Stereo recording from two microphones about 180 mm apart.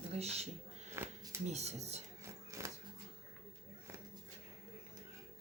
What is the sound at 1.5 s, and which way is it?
Speech, 35° right (ahead or behind).